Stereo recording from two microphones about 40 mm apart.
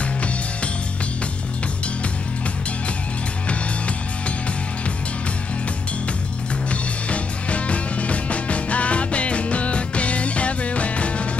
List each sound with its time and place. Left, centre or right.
6.7 s music: left